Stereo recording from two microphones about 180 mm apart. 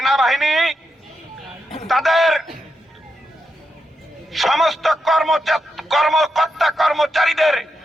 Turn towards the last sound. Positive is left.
turn(degrees=0)  # may be behind; listen again after turning